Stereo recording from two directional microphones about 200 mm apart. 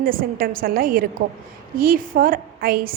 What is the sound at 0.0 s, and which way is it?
A woman's voice, 45° right (ahead or behind).